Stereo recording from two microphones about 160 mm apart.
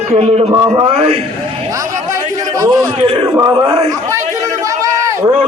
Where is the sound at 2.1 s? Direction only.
20° right (ahead or behind).